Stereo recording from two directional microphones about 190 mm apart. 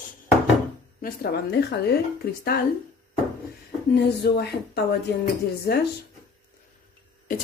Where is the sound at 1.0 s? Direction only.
60° left (ahead or behind).